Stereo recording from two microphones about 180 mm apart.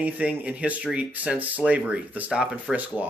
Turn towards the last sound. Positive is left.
turn(degrees=-5)  # may be behind; listen again after turning